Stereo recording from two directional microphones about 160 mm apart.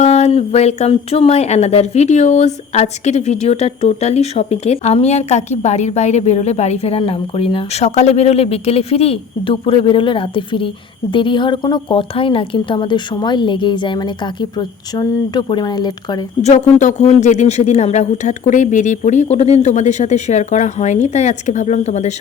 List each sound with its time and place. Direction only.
0.0 s a woman's voice: 45° left (ahead or behind); by 16.2 s 25° left (ahead or behind)
16.4 s speech: 45° left (ahead or behind)